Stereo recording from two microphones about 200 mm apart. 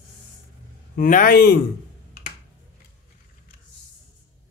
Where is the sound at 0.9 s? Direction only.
45° left (ahead or behind).